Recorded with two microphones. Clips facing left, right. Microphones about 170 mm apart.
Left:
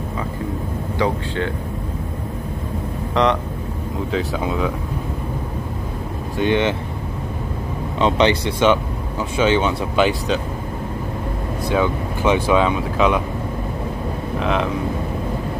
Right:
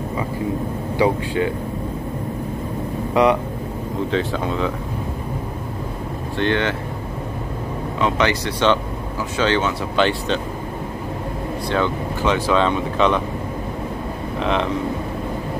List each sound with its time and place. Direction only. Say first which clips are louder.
0.9 s speech: right 3 dB; 10° right (ahead or behind)
3.2 s speech: right 2 dB; 10° right (ahead or behind)
4.1 s speech: left 1 dB; 5° left (ahead or behind)
6.3 s speech: left 2 dB; 15° left (ahead or behind)
8.0 s speech: left 3 dB; 20° left (ahead or behind); by 10.4 s 5° left (ahead or behind)
11.7 s speech: left 2 dB; 10° left (ahead or behind)
14.4 s speech: even; centre (ahead or behind)